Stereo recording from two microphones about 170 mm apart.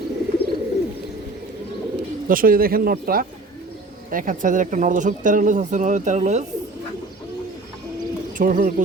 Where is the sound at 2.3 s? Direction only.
55° right (ahead or behind).